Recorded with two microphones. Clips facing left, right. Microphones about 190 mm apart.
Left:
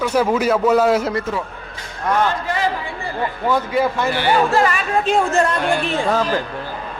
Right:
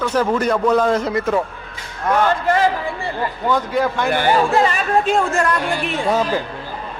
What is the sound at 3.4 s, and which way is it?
Speech, 10° left (ahead or behind).